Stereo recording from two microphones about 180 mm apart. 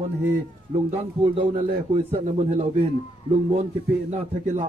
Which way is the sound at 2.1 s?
40° right (ahead or behind).